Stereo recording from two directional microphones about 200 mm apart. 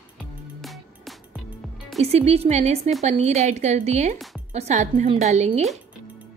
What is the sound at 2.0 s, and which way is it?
A woman's voice, 30° right (ahead or behind).